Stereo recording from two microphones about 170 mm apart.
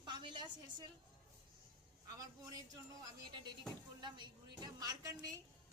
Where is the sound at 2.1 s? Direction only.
20° right (ahead or behind).